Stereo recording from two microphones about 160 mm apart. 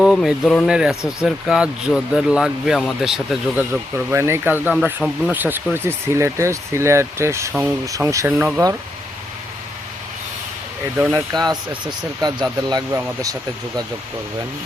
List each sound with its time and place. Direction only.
0.0 s speech: centre (ahead or behind)
3.9 s speech: 15° right (ahead or behind)
8.3 s speech: 10° right (ahead or behind)
11.1 s speech: 20° right (ahead or behind)